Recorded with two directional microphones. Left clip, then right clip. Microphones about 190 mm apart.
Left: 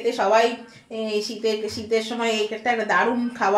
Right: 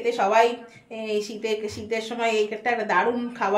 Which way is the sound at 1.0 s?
45° left (ahead or behind).